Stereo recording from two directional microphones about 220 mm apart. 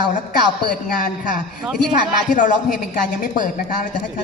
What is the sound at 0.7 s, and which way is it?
Speech, 40° left (ahead or behind).